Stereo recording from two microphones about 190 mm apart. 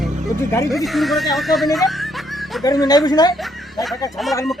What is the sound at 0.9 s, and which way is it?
Speech, centre (ahead or behind).